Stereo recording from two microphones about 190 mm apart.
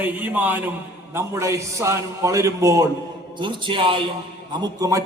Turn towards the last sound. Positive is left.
turn(degrees=-15)  # may be behind; listen again after turning